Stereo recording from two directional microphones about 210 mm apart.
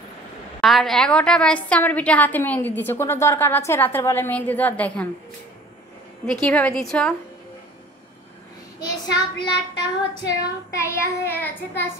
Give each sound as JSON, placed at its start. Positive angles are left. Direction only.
{"t": 0.6, "sound": "a woman's voice", "side_deg": 0}
{"t": 6.2, "sound": "a woman's voice", "side_deg": 5}
{"t": 9.1, "sound": "child singing", "side_deg": 20}
{"t": 10.4, "sound": "a woman's voice", "side_deg": 15}